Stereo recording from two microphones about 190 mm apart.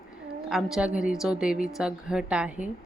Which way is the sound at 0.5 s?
5° right (ahead or behind).